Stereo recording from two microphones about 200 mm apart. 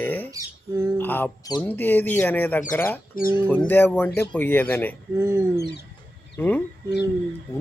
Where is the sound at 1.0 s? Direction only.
10° left (ahead or behind).